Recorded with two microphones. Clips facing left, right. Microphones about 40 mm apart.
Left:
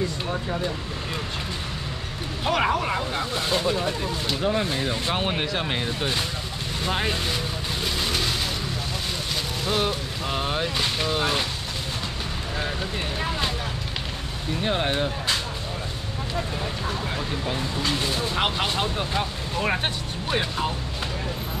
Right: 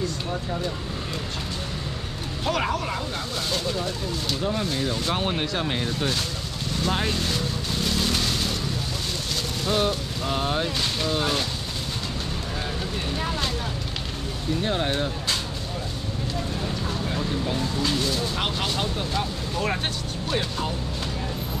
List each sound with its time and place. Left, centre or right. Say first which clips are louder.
0.3 s speech: left 1 dB; centre
2.4 s speech: left 3 dB; centre
6.8 s vehicle: even; centre
9.7 s speech: right 2 dB; centre
14.6 s speech: left 2 dB; centre
17.1 s speech: right 1 dB; centre